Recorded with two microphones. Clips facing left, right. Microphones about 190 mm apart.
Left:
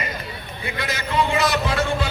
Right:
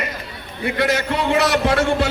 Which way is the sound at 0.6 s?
65° right (ahead or behind).